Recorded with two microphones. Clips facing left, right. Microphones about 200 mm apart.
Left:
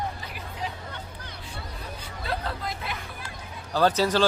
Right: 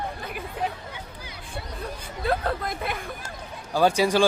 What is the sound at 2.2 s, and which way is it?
Speech, 50° right (ahead or behind).